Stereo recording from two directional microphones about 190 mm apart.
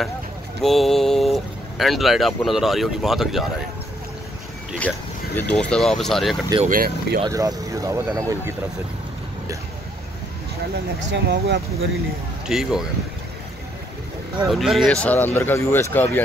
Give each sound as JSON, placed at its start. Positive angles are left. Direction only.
{"t": 0.6, "sound": "speech", "side_deg": 0}
{"t": 4.7, "sound": "speech", "side_deg": 10}
{"t": 6.6, "sound": "speech", "side_deg": -50}
{"t": 7.2, "sound": "speech", "side_deg": -20}
{"t": 11.1, "sound": "speech", "side_deg": -60}
{"t": 12.4, "sound": "speech", "side_deg": 0}
{"t": 14.5, "sound": "speech", "side_deg": 0}